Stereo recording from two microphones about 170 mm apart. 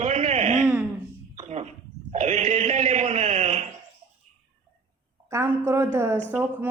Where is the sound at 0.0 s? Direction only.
40° right (ahead or behind).